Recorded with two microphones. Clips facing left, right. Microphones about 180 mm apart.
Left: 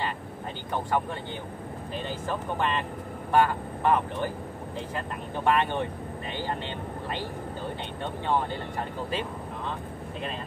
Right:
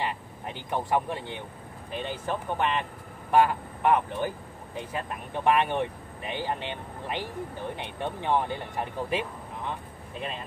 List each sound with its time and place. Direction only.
0.7 s speech: 15° right (ahead or behind)
8.3 s speech: 15° right (ahead or behind)